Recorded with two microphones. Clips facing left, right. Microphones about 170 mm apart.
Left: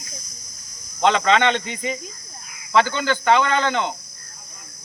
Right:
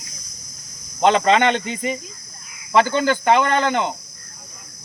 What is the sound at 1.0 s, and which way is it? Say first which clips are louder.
Speech: right 2 dB; 45° right (ahead or behind).